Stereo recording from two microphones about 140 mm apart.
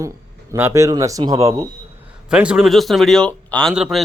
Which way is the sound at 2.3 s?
5° right (ahead or behind).